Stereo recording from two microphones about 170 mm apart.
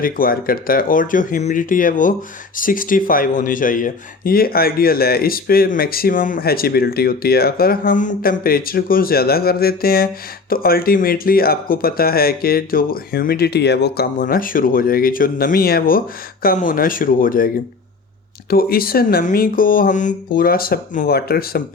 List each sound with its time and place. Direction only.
0.0 s speech: 60° left (ahead or behind)
18.5 s speech: 60° left (ahead or behind)